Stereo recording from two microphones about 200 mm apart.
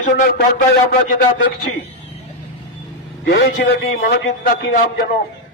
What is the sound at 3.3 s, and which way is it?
A man's voice, 55° left (ahead or behind).